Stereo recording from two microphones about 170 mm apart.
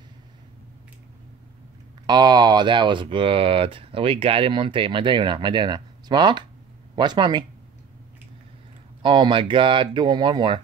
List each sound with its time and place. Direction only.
2.0 s speech: 25° right (ahead or behind)
9.0 s speech: 30° right (ahead or behind)